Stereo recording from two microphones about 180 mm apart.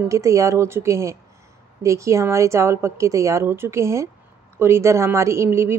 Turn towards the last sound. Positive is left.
turn(degrees=-15)  # may be behind; listen again after turning